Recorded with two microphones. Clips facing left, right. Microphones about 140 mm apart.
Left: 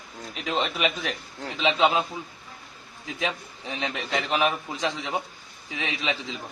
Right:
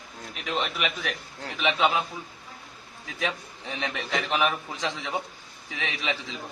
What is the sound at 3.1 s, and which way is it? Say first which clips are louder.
A man's voice: even; 20° left (ahead or behind).